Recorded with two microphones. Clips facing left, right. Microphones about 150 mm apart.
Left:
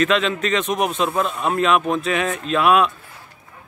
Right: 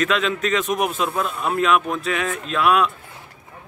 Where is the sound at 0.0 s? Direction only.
Centre (ahead or behind).